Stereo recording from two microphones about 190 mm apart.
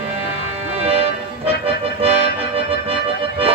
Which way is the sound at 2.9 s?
30° right (ahead or behind).